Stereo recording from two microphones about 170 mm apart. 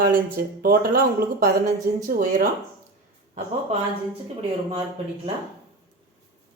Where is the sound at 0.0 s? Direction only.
55° right (ahead or behind).